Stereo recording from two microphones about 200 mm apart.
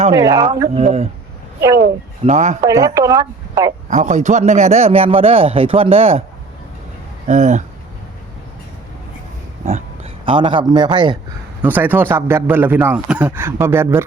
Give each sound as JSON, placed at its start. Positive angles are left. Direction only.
{"t": 0.1, "sound": "a man's voice", "side_deg": -15}
{"t": 0.7, "sound": "speech", "side_deg": -30}
{"t": 2.2, "sound": "speech", "side_deg": -35}
{"t": 2.6, "sound": "a man's voice", "side_deg": -15}
{"t": 3.8, "sound": "a man's voice", "side_deg": -35}
{"t": 7.3, "sound": "speech", "side_deg": -35}
{"t": 9.6, "sound": "speech", "side_deg": -30}
{"t": 11.6, "sound": "a man's voice", "side_deg": -10}